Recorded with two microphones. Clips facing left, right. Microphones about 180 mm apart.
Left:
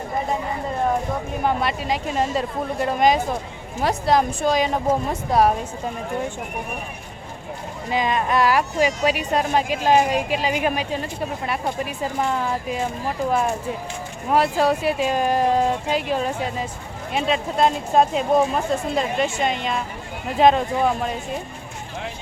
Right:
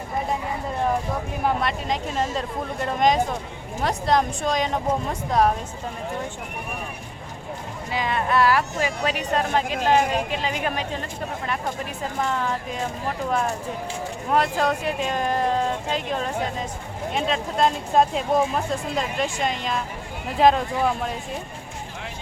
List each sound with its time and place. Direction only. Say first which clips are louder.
1.5 s speech: left 2 dB; 5° left (ahead or behind)
7.9 s speech: left 3 dB; 20° left (ahead or behind); by 21.2 s centre (ahead or behind)